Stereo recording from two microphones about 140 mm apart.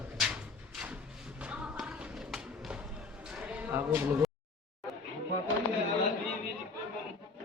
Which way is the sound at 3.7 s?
15° right (ahead or behind).